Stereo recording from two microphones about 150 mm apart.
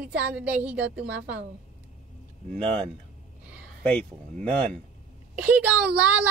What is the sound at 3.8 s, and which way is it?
Speech, 10° left (ahead or behind).